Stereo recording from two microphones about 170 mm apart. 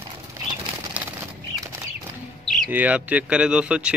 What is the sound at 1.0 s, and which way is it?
Bird flight, 10° right (ahead or behind).